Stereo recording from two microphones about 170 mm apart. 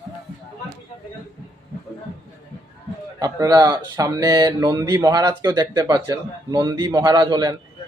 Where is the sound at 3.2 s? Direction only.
20° right (ahead or behind).